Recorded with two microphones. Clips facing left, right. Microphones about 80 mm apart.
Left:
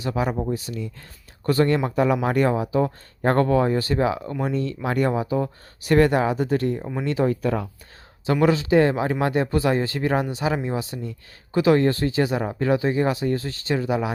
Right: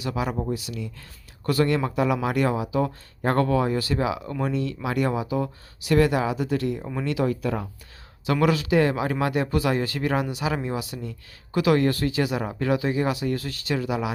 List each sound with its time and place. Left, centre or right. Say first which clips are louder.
0.0 s speech: left 3 dB; left